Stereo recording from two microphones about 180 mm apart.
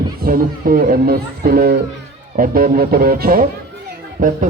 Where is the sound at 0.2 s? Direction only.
55° right (ahead or behind).